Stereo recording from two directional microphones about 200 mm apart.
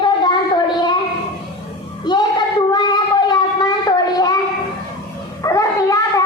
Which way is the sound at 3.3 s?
20° left (ahead or behind).